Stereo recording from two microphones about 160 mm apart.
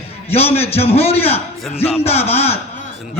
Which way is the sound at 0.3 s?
40° left (ahead or behind).